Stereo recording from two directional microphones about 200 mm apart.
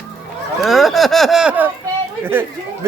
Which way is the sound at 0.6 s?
Centre (ahead or behind).